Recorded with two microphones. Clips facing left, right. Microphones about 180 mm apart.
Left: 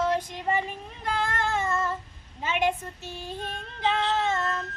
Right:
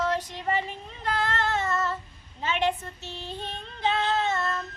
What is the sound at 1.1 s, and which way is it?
Child singing, 10° left (ahead or behind).